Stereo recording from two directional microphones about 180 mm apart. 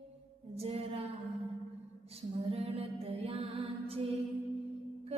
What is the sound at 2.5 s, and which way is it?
Music, 35° right (ahead or behind).